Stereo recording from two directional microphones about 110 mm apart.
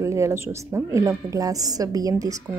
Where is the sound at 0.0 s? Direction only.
25° right (ahead or behind).